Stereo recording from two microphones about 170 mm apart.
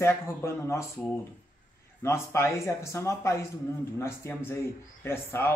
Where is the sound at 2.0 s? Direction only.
15° left (ahead or behind).